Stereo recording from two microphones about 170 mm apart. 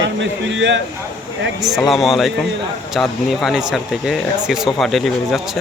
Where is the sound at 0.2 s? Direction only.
90° right.